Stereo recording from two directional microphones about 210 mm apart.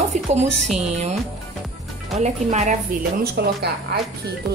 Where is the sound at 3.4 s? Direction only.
50° right (ahead or behind).